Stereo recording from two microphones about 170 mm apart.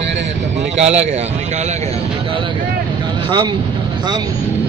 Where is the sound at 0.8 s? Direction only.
40° right (ahead or behind).